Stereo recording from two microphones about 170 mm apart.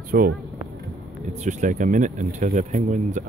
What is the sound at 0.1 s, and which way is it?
Speech, 60° right (ahead or behind).